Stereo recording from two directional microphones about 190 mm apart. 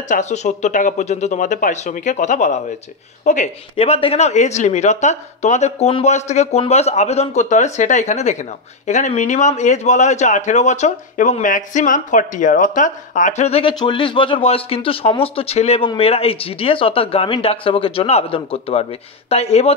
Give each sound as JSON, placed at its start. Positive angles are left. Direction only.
{"t": 0.1, "sound": "a man's voice", "side_deg": 35}